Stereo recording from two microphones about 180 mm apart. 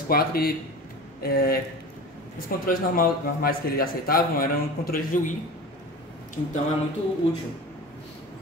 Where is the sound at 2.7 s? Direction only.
55° left (ahead or behind).